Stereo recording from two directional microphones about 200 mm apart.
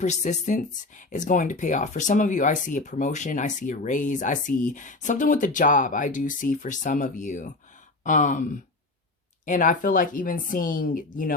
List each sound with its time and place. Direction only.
0.0 s speech: 35° left (ahead or behind)